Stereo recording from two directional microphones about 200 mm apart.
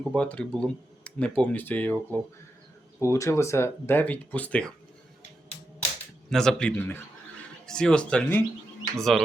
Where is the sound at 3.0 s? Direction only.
15° left (ahead or behind).